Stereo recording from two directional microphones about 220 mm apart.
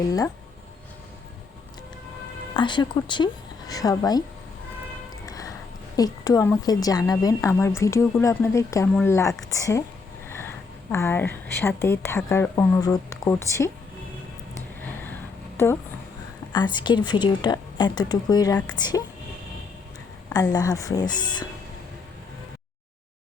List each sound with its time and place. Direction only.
2.6 s a woman's voice: 20° left (ahead or behind)
5.2 s music: 15° left (ahead or behind)
6.0 s a woman's voice: 15° left (ahead or behind)
10.2 s a sound: 10° left (ahead or behind)
10.9 s a woman's voice: 10° left (ahead or behind)
15.5 s a woman's voice: 10° left (ahead or behind)
20.3 s a woman's voice: 15° left (ahead or behind)